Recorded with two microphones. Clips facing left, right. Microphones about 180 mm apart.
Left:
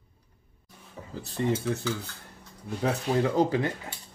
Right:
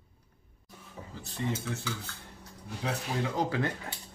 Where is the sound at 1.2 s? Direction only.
35° left (ahead or behind).